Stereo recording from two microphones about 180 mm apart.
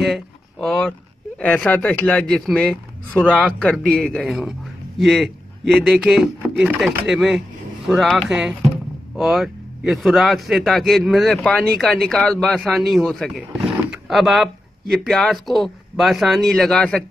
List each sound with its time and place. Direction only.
0.0 s speech: centre (ahead or behind)